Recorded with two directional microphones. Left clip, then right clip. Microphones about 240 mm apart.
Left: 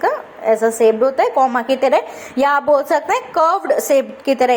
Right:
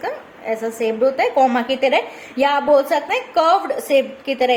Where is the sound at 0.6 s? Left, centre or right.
Centre.